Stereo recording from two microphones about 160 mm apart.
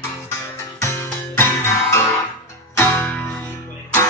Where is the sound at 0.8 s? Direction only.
15° left (ahead or behind).